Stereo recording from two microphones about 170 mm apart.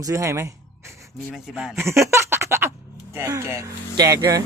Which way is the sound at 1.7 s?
15° right (ahead or behind).